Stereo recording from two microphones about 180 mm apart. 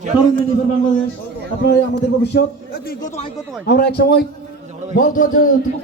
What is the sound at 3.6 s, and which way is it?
Speech, 60° left (ahead or behind).